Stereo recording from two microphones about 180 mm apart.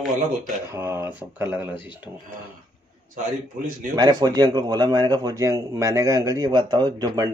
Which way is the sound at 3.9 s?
20° right (ahead or behind).